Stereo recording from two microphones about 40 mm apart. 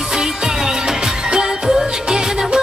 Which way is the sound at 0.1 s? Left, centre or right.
Centre.